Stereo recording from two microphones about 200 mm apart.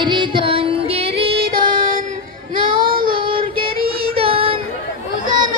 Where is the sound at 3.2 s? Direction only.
25° right (ahead or behind).